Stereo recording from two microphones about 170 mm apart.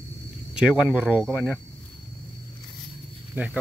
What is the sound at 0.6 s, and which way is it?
Speech, 5° right (ahead or behind).